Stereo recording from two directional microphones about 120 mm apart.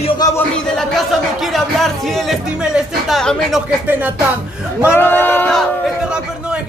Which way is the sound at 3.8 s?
15° right (ahead or behind).